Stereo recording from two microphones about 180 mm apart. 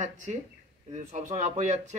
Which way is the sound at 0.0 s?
40° right (ahead or behind).